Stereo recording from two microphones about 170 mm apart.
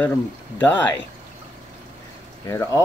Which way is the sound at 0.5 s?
10° left (ahead or behind).